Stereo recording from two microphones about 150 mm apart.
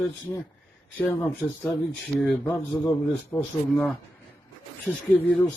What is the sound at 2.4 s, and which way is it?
Speech, 20° left (ahead or behind).